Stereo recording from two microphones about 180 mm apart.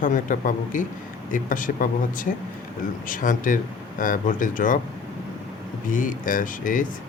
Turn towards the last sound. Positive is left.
turn(degrees=50)  # may be behind; listen again after turning